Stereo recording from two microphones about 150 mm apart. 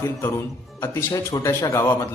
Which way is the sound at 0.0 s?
15° left (ahead or behind).